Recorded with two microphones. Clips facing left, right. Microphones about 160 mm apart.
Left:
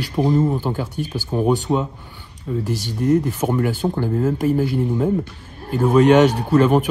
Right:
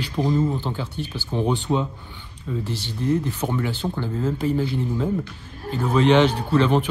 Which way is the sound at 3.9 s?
45° left (ahead or behind).